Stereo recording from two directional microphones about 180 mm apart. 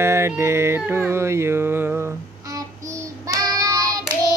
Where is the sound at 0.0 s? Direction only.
15° right (ahead or behind).